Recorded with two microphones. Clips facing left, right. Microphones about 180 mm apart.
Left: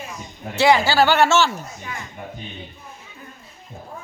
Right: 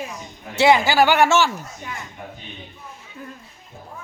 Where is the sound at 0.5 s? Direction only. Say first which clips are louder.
Even; 20° right (ahead or behind).